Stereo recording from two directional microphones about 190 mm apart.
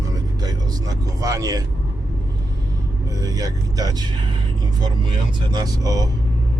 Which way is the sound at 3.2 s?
20° right (ahead or behind).